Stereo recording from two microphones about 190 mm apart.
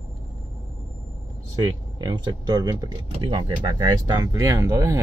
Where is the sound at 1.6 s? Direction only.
20° right (ahead or behind).